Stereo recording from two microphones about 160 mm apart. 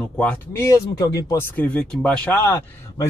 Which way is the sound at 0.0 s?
10° left (ahead or behind).